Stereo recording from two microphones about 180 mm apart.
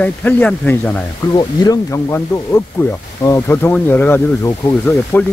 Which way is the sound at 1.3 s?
20° left (ahead or behind).